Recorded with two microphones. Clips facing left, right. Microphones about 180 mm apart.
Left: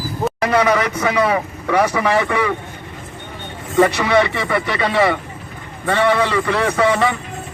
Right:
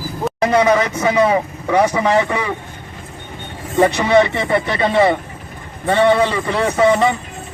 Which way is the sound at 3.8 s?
20° right (ahead or behind).